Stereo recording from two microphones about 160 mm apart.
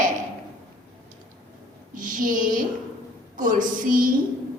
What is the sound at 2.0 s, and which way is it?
A woman's voice, 55° right (ahead or behind).